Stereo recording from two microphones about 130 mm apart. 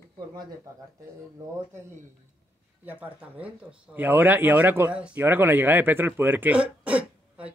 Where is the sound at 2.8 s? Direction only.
10° right (ahead or behind).